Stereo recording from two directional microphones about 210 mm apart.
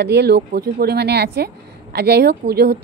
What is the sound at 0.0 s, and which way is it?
A woman's voice, 50° right (ahead or behind).